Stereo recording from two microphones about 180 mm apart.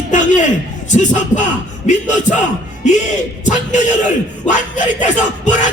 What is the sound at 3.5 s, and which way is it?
Speech, 40° left (ahead or behind).